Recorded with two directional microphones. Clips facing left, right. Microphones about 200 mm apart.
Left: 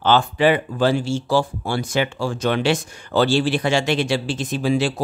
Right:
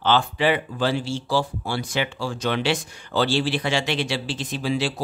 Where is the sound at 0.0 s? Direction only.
45° left (ahead or behind).